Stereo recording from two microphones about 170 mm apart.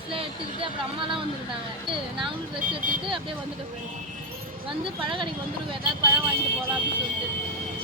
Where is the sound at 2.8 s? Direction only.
55° right (ahead or behind).